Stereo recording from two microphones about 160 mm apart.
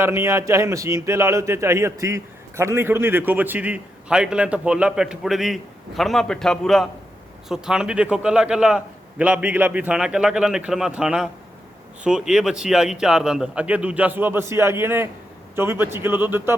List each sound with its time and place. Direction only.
0.0 s a man's voice: 15° right (ahead or behind)